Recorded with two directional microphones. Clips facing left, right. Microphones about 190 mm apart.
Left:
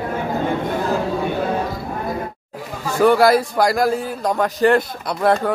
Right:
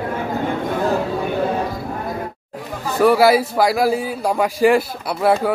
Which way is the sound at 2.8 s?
Centre (ahead or behind).